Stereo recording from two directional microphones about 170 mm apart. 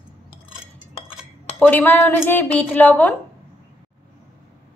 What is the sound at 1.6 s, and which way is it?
Chink, 10° left (ahead or behind).